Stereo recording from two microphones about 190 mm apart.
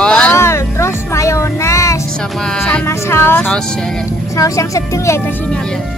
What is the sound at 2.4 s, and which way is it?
Music, 5° left (ahead or behind).